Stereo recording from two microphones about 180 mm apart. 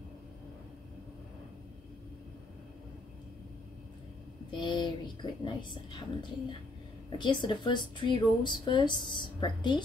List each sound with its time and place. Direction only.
4.5 s speech: 25° left (ahead or behind)
7.1 s speech: 25° left (ahead or behind)